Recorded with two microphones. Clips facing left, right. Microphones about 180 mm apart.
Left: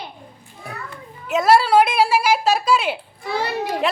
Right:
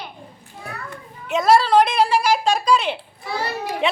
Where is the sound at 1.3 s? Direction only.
5° left (ahead or behind).